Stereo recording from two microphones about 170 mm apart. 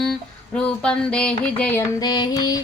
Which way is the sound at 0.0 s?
5° left (ahead or behind).